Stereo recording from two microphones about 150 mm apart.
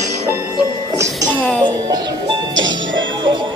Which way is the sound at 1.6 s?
30° right (ahead or behind).